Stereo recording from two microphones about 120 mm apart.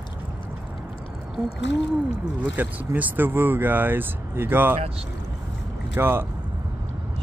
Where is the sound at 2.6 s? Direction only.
15° right (ahead or behind).